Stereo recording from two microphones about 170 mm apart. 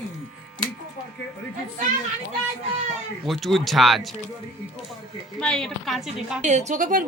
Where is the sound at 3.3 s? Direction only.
Centre (ahead or behind).